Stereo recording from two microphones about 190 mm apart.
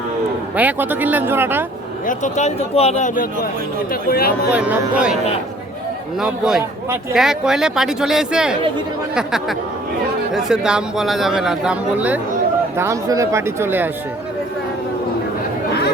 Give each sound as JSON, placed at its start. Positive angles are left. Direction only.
{"t": 0.5, "sound": "speech", "side_deg": -10}
{"t": 2.0, "sound": "speech", "side_deg": 40}
{"t": 4.5, "sound": "speech", "side_deg": -5}
{"t": 6.1, "sound": "speech", "side_deg": -5}